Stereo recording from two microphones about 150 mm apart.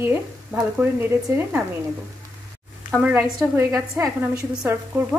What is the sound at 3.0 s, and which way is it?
A woman's voice, 10° right (ahead or behind).